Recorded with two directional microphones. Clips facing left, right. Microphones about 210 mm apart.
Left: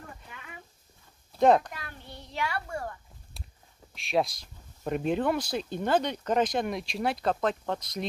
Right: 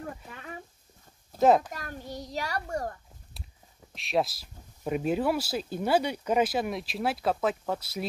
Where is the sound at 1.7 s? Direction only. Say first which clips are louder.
Right 6 dB; 40° right (ahead or behind).